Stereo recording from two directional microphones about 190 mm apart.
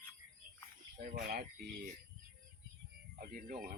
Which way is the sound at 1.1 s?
55° right (ahead or behind).